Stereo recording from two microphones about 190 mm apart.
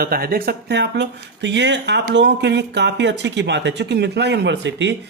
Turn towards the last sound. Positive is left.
turn(degrees=-70)  # may be behind; listen again after turning